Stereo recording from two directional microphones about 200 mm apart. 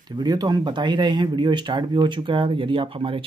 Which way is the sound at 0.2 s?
20° right (ahead or behind).